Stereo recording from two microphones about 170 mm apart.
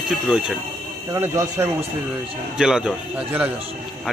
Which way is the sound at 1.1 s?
15° right (ahead or behind).